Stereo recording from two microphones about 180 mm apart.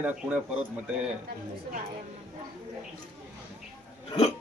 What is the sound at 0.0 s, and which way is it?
Speech, 5° right (ahead or behind).